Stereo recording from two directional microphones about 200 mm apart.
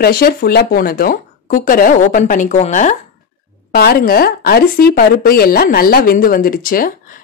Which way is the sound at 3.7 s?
50° left (ahead or behind).